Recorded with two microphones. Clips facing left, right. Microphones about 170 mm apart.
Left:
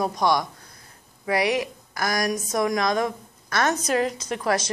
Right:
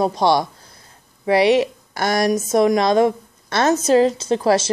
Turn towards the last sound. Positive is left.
turn(degrees=-30)  # may be behind; listen again after turning